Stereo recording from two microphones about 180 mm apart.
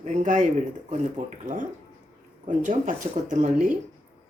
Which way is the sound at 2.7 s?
45° right (ahead or behind).